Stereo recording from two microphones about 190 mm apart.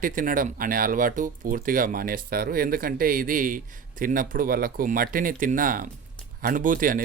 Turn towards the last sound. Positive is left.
turn(degrees=-45)  # may be behind; listen again after turning